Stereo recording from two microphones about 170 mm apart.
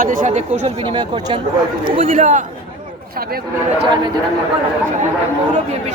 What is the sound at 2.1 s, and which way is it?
Speech, 50° right (ahead or behind).